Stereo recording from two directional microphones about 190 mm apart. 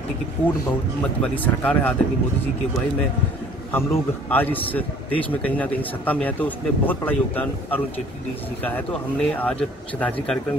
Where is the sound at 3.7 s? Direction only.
10° left (ahead or behind).